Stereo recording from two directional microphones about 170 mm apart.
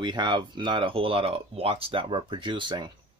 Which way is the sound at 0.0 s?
25° right (ahead or behind).